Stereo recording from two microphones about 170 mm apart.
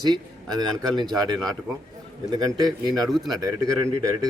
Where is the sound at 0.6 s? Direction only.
25° right (ahead or behind).